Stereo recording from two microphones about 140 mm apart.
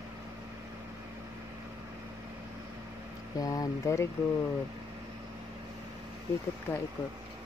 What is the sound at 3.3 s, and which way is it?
Speech, 25° left (ahead or behind).